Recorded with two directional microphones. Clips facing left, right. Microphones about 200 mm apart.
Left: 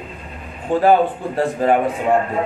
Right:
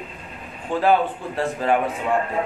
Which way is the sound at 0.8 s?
45° left (ahead or behind).